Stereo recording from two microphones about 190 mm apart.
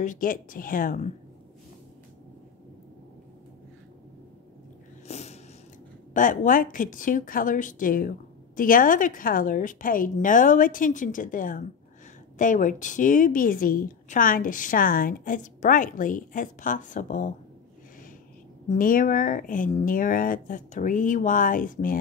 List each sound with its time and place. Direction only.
0.0 s a woman's voice: 45° left (ahead or behind)
5.0 s a sound: 35° left (ahead or behind)
6.1 s a woman's voice: 45° left (ahead or behind)
18.7 s a woman's voice: 45° left (ahead or behind)